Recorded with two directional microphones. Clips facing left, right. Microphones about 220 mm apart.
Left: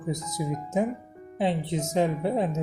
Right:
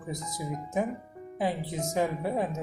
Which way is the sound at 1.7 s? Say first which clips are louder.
Left 4 dB; 25° left (ahead or behind).